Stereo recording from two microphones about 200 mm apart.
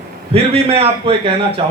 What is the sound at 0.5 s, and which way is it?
Speech, 30° right (ahead or behind).